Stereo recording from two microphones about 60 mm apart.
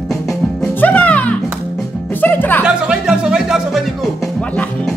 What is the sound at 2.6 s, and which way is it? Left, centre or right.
Music, centre.